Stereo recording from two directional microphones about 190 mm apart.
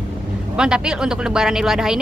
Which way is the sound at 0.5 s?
5° right (ahead or behind).